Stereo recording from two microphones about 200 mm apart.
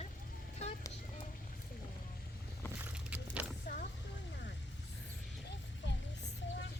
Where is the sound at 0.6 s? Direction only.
30° left (ahead or behind).